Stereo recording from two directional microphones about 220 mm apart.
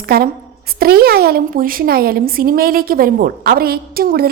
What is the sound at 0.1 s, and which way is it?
Speech, 45° right (ahead or behind).